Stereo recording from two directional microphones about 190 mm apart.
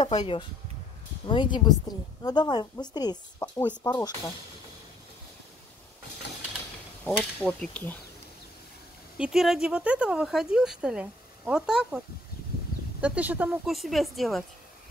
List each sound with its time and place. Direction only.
0.0 s a woman's voice: 25° left (ahead or behind)
7.1 s speech: 5° left (ahead or behind)
9.2 s speech: centre (ahead or behind)
13.0 s speech: 5° right (ahead or behind)